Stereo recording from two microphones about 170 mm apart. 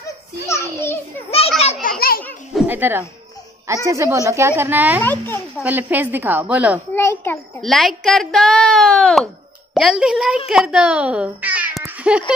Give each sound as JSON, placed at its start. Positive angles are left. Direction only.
{"t": 0.5, "sound": "a sound", "side_deg": 15}
{"t": 1.8, "sound": "children playing", "side_deg": 60}
{"t": 2.5, "sound": "a woman's voice", "side_deg": -10}
{"t": 5.0, "sound": "a child's voice", "side_deg": 10}
{"t": 5.6, "sound": "a woman's voice", "side_deg": -10}
{"t": 6.9, "sound": "a child's voice", "side_deg": 15}
{"t": 7.6, "sound": "a child's voice", "side_deg": 0}